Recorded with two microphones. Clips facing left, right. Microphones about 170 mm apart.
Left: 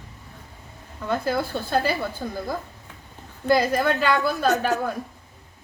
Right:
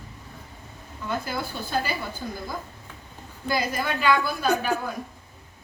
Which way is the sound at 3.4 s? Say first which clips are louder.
Left 7 dB; 55° left (ahead or behind).